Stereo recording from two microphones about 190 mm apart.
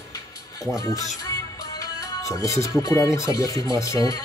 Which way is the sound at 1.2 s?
20° left (ahead or behind).